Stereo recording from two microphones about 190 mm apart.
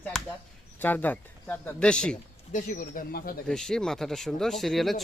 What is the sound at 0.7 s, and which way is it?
Speech, 10° left (ahead or behind).